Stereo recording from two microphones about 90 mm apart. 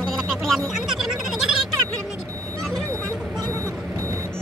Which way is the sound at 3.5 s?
35° right (ahead or behind).